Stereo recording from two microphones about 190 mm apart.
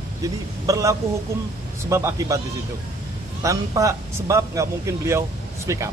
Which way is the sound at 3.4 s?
15° right (ahead or behind).